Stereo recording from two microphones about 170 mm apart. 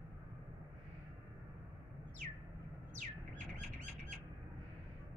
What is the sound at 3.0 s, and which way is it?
Bird, 45° right (ahead or behind).